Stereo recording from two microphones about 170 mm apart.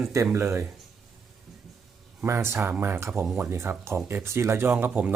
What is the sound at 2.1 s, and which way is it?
Speech, 15° right (ahead or behind).